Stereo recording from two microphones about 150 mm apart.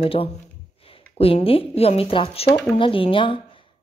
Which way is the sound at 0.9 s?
40° left (ahead or behind).